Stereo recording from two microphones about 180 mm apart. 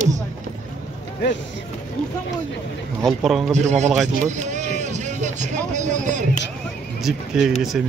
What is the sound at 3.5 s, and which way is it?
Speech, 40° right (ahead or behind).